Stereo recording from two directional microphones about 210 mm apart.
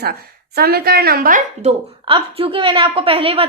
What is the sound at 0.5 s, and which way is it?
A woman's voice, 50° right (ahead or behind).